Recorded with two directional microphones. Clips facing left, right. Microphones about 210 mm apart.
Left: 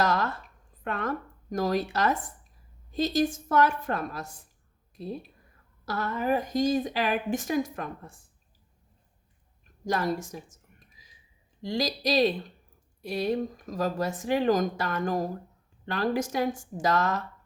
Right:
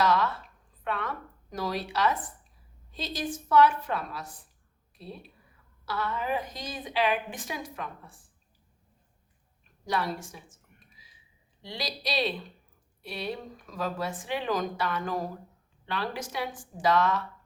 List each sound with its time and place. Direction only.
0.0 s a sound: 45° left (ahead or behind)
0.9 s a woman's voice: 45° left (ahead or behind)
9.8 s a woman's voice: 45° left (ahead or behind)